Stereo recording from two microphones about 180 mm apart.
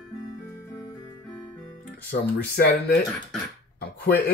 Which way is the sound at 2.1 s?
60° left (ahead or behind).